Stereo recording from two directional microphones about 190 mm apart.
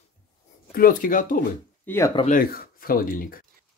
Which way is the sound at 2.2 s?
45° left (ahead or behind).